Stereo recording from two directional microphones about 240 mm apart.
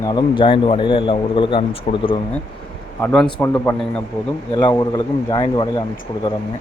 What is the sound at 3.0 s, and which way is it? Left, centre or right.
Speech, centre.